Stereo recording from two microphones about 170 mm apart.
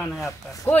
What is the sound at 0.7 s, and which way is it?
Speech, 10° left (ahead or behind).